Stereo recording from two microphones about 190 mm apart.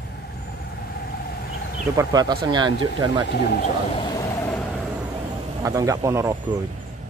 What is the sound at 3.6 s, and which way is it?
Vehicle, 25° left (ahead or behind).